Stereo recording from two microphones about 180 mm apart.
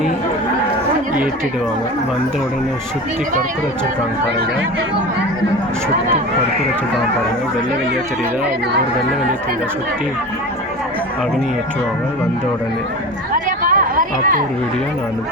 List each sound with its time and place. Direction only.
13.3 s chatter: 50° right (ahead or behind)